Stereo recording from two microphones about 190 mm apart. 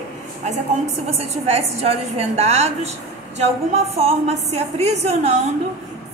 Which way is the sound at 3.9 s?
35° right (ahead or behind).